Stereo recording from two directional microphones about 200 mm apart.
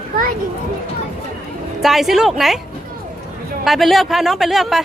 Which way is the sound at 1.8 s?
Centre (ahead or behind).